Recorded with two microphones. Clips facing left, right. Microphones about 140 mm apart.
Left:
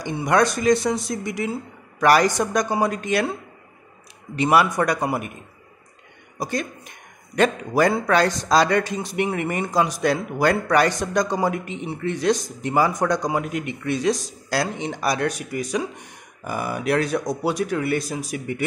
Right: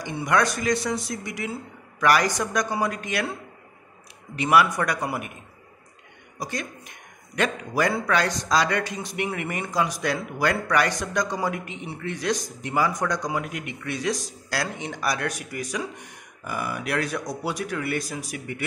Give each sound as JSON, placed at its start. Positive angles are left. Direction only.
{"t": 0.0, "sound": "a man's voice", "side_deg": 25}
{"t": 4.4, "sound": "a man's voice", "side_deg": 30}
{"t": 7.3, "sound": "a man's voice", "side_deg": 30}